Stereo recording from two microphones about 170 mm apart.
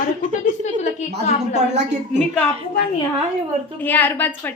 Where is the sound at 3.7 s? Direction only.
10° left (ahead or behind).